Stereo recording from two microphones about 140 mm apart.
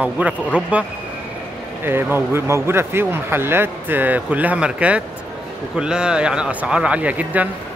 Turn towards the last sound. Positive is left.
turn(degrees=-10)  # may be behind; listen again after turning